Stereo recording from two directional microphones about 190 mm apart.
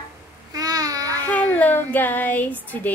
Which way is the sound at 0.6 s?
20° right (ahead or behind).